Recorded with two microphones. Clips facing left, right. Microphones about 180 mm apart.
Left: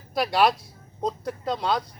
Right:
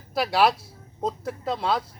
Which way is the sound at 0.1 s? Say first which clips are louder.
Even; centre (ahead or behind).